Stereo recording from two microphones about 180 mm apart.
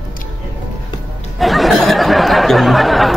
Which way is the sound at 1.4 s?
Centre (ahead or behind).